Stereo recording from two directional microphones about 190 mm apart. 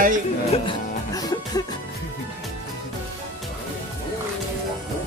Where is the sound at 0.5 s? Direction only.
25° left (ahead or behind).